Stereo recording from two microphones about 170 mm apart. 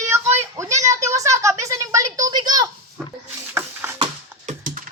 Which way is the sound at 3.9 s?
35° right (ahead or behind).